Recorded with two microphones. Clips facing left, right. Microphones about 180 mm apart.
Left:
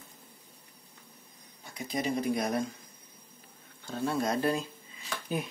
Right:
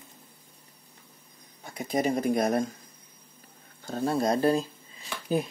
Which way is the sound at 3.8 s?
40° right (ahead or behind).